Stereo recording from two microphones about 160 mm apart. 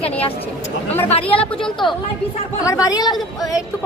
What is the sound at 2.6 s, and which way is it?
Speech, 20° left (ahead or behind).